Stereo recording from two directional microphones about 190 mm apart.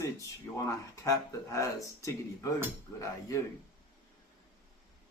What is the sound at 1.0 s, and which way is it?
Speech, 15° left (ahead or behind).